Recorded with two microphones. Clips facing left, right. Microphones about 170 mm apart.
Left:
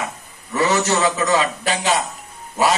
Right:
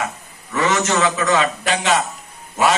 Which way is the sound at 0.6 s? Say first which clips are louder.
Even; 35° left (ahead or behind).